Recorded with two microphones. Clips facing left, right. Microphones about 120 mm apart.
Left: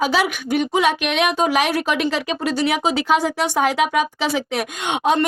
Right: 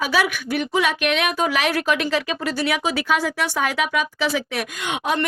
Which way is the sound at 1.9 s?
25° left (ahead or behind).